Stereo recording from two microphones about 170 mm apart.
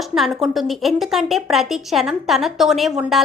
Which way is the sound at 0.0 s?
Centre (ahead or behind).